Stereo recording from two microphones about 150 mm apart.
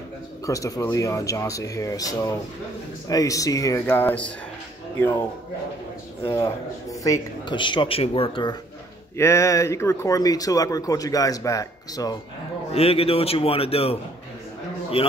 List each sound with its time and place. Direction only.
0.5 s speech: 20° left (ahead or behind)
3.8 s speech: 10° left (ahead or behind)
6.2 s a man's voice: 20° left (ahead or behind); by 8.5 s 35° left (ahead or behind)
9.1 s speech: 20° left (ahead or behind)
12.7 s a man's voice: 40° left (ahead or behind)
15.0 s a man's voice: 40° left (ahead or behind)